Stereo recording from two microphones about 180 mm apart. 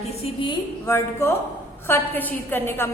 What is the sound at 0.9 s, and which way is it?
A woman's voice, 15° left (ahead or behind).